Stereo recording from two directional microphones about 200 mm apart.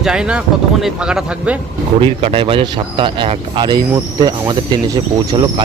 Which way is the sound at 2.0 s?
30° right (ahead or behind).